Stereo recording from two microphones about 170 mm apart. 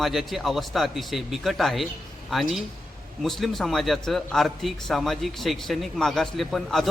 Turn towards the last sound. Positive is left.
turn(degrees=0)  # may be behind; listen again after turning